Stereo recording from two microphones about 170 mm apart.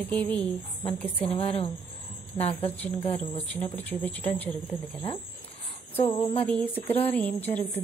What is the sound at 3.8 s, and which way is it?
Speech, 10° left (ahead or behind).